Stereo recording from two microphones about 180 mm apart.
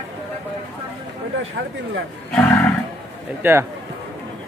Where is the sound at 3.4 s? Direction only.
15° right (ahead or behind).